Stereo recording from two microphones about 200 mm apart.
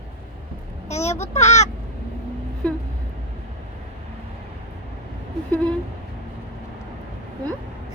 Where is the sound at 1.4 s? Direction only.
35° left (ahead or behind).